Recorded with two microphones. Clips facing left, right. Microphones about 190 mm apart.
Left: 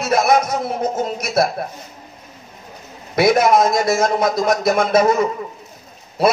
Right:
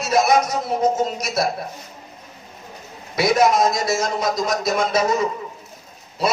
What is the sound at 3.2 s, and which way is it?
Speech, 55° left (ahead or behind).